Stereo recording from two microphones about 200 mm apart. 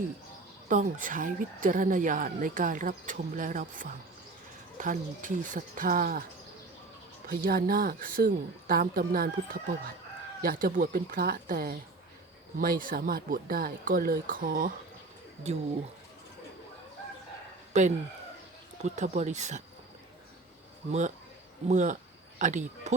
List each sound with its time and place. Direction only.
0.7 s speech: 40° right (ahead or behind)
7.3 s speech: 50° right (ahead or behind)
15.5 s speech: 35° right (ahead or behind)
17.7 s speech: 35° right (ahead or behind)
21.7 s speech: 40° right (ahead or behind)